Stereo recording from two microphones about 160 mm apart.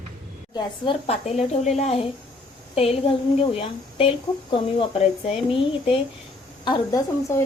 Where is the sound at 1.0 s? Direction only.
40° left (ahead or behind).